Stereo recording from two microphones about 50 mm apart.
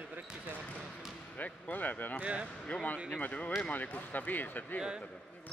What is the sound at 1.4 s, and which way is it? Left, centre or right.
Speech, left.